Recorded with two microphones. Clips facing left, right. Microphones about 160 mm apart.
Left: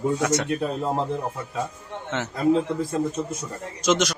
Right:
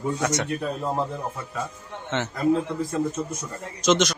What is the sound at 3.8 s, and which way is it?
Speech, 10° left (ahead or behind).